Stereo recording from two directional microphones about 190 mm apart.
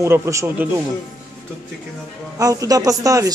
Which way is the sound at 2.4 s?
20° right (ahead or behind).